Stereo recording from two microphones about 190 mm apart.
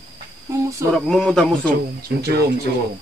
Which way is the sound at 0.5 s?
15° right (ahead or behind).